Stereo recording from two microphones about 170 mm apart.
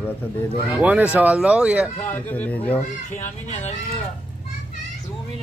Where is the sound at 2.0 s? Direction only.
10° left (ahead or behind).